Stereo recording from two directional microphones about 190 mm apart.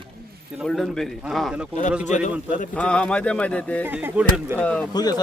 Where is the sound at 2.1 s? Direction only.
40° left (ahead or behind).